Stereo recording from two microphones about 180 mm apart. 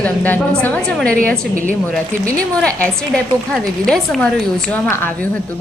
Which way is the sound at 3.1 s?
5° left (ahead or behind).